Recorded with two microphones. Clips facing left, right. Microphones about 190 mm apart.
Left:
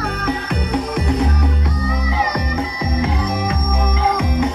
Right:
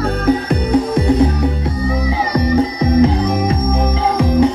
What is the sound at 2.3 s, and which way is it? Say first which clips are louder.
Music: right 8 dB; 35° right (ahead or behind).